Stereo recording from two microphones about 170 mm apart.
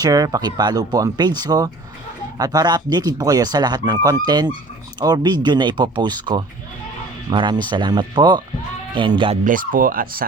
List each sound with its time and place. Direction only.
0.0 s speech: 20° right (ahead or behind)
9.4 s speech: 55° right (ahead or behind)